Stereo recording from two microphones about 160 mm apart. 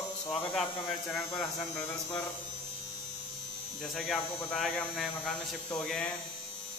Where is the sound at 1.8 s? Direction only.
20° left (ahead or behind).